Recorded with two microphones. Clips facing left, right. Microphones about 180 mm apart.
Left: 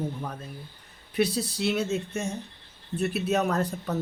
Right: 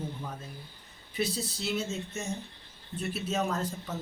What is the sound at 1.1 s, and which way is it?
Speech, 70° left (ahead or behind).